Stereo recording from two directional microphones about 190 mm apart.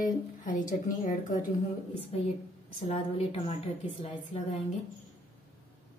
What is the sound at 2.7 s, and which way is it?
Speech, 30° left (ahead or behind).